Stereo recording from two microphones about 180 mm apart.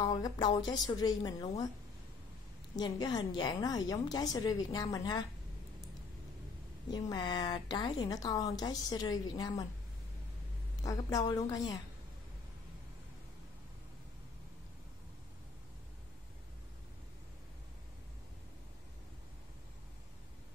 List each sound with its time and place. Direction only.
0.0 s a woman's voice: 20° left (ahead or behind)
2.7 s a woman's voice: 25° left (ahead or behind)
6.9 s a woman's voice: 25° left (ahead or behind)
10.8 s a woman's voice: 20° left (ahead or behind)